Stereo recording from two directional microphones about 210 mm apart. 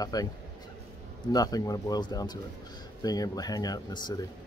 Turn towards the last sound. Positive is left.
turn(degrees=20)  # may be behind; listen again after turning